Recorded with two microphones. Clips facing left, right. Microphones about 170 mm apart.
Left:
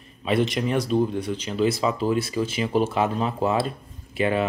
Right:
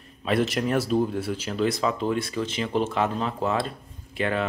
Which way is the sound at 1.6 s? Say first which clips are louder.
Left 2 dB; 5° left (ahead or behind).